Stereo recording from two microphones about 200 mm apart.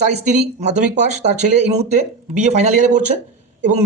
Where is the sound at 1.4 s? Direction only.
35° right (ahead or behind).